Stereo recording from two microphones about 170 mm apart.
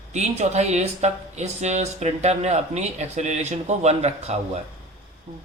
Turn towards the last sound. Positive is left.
turn(degrees=-40)  # may be behind; listen again after turning